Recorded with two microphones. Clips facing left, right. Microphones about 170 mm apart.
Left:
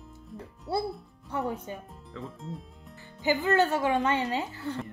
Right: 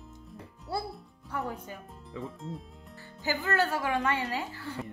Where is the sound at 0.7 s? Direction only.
25° left (ahead or behind).